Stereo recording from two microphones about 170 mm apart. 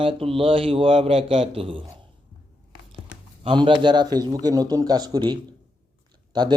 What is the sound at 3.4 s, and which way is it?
A man's voice, 30° right (ahead or behind).